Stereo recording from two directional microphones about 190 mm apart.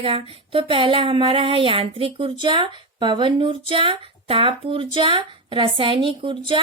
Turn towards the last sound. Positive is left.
turn(degrees=-25)  # may be behind; listen again after turning